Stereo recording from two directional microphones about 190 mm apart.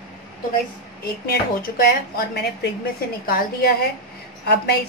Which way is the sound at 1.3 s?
50° left (ahead or behind).